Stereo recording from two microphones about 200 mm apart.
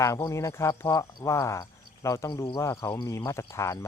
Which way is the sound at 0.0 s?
15° left (ahead or behind).